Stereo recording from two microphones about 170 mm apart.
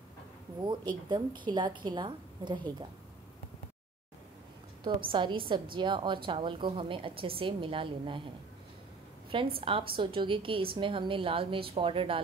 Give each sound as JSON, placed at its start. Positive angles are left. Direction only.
{"t": 0.7, "sound": "a woman's voice", "side_deg": -25}
{"t": 4.8, "sound": "a woman's voice", "side_deg": -30}
{"t": 9.3, "sound": "a woman's voice", "side_deg": -30}